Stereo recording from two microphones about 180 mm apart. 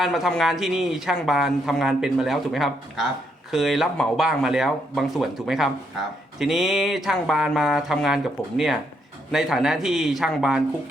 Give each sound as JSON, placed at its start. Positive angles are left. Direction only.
{"t": 0.0, "sound": "speech", "side_deg": 0}